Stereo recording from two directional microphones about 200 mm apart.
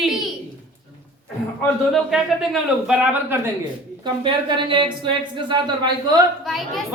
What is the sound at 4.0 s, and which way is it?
A woman's voice, 25° right (ahead or behind).